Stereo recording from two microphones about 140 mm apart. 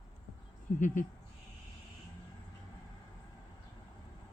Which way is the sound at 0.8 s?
65° left (ahead or behind).